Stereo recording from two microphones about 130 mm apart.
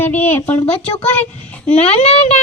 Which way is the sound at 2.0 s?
55° left (ahead or behind).